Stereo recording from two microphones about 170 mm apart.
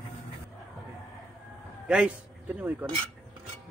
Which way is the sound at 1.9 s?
5° right (ahead or behind).